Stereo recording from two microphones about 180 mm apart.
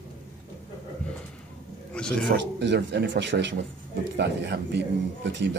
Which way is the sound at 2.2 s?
75° right (ahead or behind).